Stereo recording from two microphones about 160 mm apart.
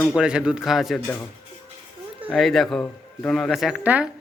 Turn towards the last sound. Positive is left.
turn(degrees=-10)  # may be behind; listen again after turning